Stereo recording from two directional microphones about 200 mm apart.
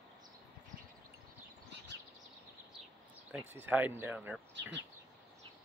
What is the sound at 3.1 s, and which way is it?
Speech, 5° right (ahead or behind).